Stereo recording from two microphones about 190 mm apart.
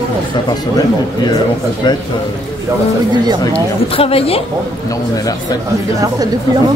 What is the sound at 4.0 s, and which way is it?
Speech, 30° left (ahead or behind).